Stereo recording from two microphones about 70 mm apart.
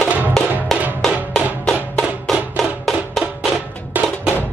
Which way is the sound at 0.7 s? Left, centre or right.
Centre.